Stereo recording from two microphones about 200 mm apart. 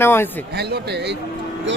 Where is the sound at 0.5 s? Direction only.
55° right (ahead or behind).